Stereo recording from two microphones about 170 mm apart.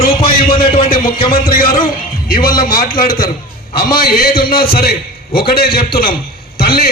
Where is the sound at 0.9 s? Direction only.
30° left (ahead or behind).